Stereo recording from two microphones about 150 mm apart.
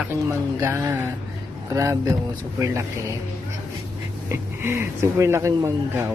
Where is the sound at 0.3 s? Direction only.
20° right (ahead or behind).